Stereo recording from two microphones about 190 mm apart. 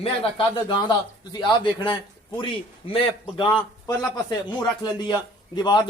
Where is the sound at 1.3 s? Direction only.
25° left (ahead or behind).